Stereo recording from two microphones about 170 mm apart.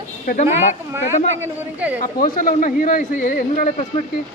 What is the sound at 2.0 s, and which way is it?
A man's voice, 55° left (ahead or behind).